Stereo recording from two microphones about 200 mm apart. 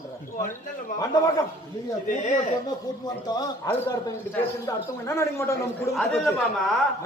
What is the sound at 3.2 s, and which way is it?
A man's voice, 20° left (ahead or behind).